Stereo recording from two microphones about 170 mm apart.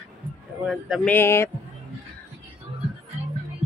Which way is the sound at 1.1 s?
15° left (ahead or behind).